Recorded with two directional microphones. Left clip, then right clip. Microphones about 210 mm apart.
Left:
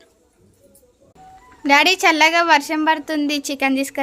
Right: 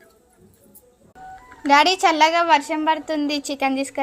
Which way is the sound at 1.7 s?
20° left (ahead or behind).